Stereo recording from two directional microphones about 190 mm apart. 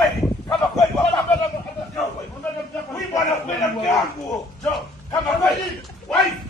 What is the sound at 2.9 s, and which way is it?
Speech, 20° left (ahead or behind).